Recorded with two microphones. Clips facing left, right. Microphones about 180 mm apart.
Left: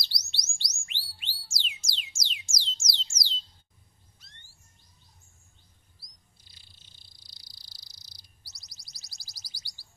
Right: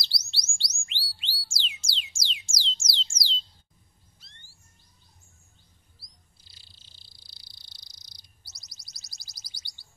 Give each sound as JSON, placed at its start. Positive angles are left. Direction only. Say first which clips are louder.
{"t": 0.0, "sound": "chirp", "louder": "right 2 dB", "side_deg": -25}
{"t": 0.8, "sound": "music", "louder": "right 5 dB", "side_deg": -30}
{"t": 7.0, "sound": "bird", "louder": "right 1 dB", "side_deg": -30}